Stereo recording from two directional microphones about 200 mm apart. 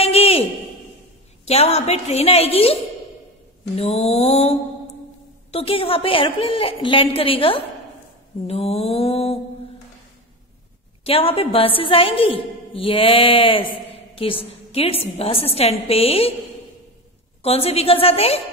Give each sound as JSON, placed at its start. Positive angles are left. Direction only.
{"t": 0.0, "sound": "a sound", "side_deg": 30}
{"t": 1.4, "sound": "a woman's voice", "side_deg": 30}
{"t": 8.5, "sound": "mantra", "side_deg": 30}
{"t": 11.1, "sound": "a woman's voice", "side_deg": 30}
{"t": 17.4, "sound": "a woman's voice", "side_deg": 30}